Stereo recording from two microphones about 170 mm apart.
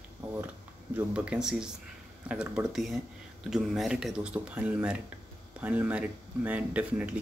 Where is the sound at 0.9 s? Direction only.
5° right (ahead or behind).